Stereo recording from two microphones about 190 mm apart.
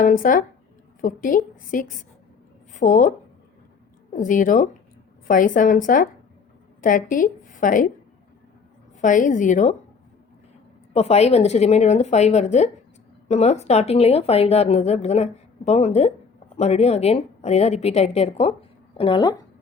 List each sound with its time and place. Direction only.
0.0 s a woman's voice: 45° left (ahead or behind)
4.1 s a woman's voice: 45° left (ahead or behind)
9.0 s speech: 40° left (ahead or behind)
10.9 s speech: 35° left (ahead or behind)